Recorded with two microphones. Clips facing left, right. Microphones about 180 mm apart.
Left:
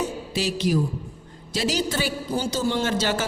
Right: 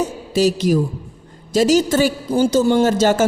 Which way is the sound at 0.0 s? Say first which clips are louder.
Right 9 dB; 45° right (ahead or behind).